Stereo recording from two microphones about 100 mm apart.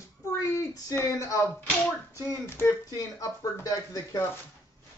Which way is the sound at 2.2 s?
25° left (ahead or behind).